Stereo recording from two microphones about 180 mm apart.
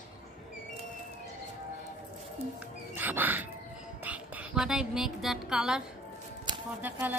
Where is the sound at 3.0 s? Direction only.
10° right (ahead or behind).